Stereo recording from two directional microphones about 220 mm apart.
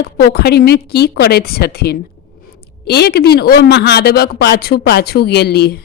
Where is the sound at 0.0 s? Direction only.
45° left (ahead or behind).